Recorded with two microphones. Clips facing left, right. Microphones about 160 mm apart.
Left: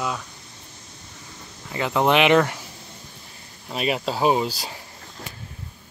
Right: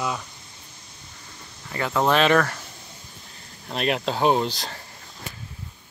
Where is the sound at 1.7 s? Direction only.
15° left (ahead or behind).